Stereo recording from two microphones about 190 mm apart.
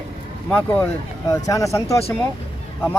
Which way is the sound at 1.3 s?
15° left (ahead or behind).